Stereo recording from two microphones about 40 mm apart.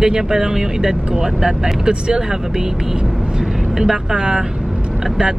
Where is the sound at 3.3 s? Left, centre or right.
Centre.